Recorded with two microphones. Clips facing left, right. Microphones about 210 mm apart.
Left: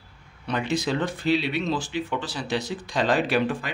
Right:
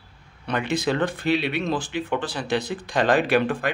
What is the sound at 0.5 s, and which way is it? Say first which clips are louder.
Speech: right 2 dB; 55° right (ahead or behind).